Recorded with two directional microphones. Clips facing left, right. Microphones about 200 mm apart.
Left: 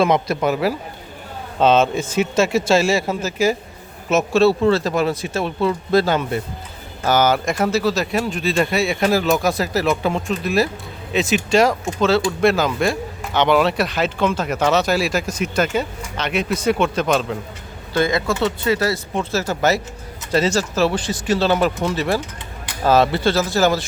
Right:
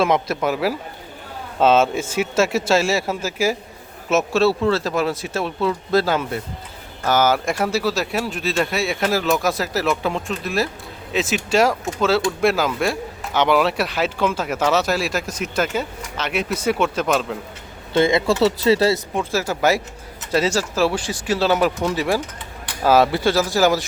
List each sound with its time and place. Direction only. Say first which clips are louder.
0.0 s speech: left 2 dB; centre (ahead or behind)
17.9 s speech: right 2 dB; 25° right (ahead or behind)
18.3 s speech: right 3 dB; 35° right (ahead or behind)
19.1 s speech: even; 10° right (ahead or behind)